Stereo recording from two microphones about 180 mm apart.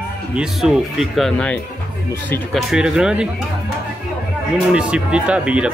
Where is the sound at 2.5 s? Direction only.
5° right (ahead or behind).